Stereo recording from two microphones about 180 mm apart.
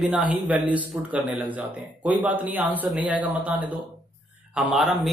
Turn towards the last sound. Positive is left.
turn(degrees=0)  # may be behind; listen again after turning